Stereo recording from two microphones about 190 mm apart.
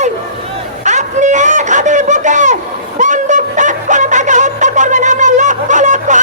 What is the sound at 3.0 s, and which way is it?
Music, 40° right (ahead or behind).